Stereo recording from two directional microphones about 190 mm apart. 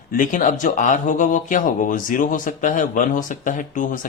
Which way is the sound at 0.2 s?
45° left (ahead or behind).